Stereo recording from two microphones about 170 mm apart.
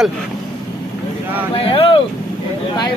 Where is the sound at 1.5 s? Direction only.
30° left (ahead or behind).